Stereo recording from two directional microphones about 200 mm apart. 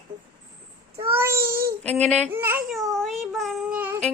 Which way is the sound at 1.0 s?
15° right (ahead or behind).